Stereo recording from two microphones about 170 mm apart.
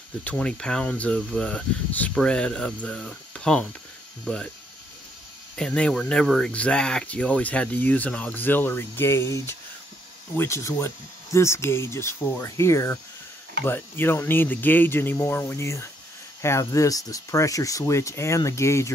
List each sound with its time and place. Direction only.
0.2 s speech: 5° left (ahead or behind)
5.6 s speech: 5° left (ahead or behind)